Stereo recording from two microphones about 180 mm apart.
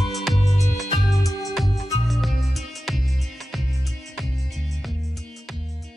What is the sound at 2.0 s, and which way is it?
Music, centre (ahead or behind).